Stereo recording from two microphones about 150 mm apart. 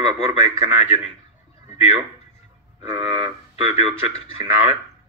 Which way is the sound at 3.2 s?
45° left (ahead or behind).